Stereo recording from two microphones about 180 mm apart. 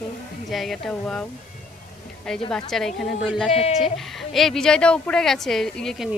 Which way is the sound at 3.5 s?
35° left (ahead or behind).